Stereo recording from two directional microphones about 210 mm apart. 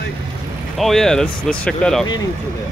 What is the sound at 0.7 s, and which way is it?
Speech, centre (ahead or behind).